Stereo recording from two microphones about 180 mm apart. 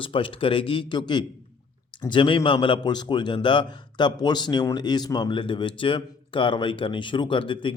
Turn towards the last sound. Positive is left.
turn(degrees=25)  # may be behind; listen again after turning